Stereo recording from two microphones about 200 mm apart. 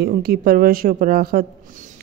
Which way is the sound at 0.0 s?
50° right (ahead or behind).